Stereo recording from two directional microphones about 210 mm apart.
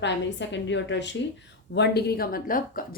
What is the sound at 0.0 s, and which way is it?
A woman's voice, 60° left (ahead or behind).